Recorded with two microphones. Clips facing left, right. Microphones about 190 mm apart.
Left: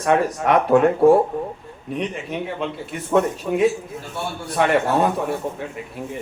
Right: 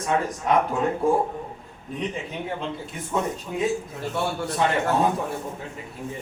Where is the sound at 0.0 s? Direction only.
70° left (ahead or behind).